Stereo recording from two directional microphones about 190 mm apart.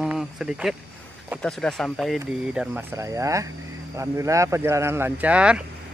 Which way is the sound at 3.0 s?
15° right (ahead or behind).